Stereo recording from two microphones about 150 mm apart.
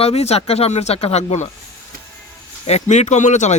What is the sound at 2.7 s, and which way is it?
Speech, 50° left (ahead or behind).